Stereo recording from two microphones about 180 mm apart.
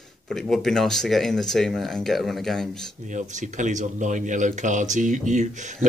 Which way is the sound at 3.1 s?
45° right (ahead or behind).